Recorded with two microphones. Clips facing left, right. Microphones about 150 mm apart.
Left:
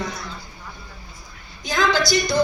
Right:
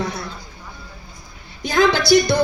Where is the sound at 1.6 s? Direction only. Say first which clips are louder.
Right 4 dB; 60° right (ahead or behind).